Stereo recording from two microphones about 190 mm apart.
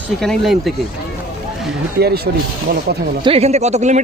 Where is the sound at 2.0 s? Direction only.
55° right (ahead or behind).